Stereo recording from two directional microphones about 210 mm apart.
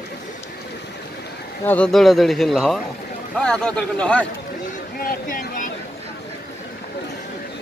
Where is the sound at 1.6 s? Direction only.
5° left (ahead or behind).